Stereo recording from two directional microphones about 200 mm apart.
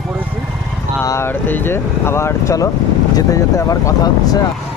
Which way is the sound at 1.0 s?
15° left (ahead or behind).